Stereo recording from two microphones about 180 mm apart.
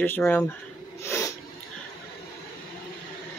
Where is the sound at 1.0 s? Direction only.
15° left (ahead or behind).